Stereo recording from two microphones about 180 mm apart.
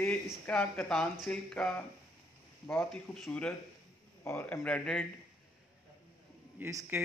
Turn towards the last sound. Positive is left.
turn(degrees=-15)  # may be behind; listen again after turning